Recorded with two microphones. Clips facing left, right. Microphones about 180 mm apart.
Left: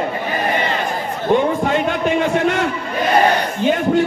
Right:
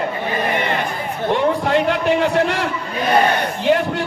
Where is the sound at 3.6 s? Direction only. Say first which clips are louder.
Left 2 dB; 70° right (ahead or behind).